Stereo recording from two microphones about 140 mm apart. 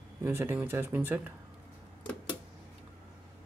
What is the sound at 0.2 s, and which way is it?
Speech, 15° right (ahead or behind).